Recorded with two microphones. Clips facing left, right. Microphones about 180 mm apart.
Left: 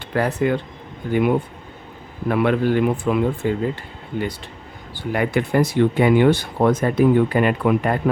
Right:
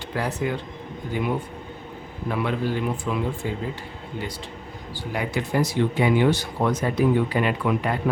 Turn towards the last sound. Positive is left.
turn(degrees=50)  # may be behind; listen again after turning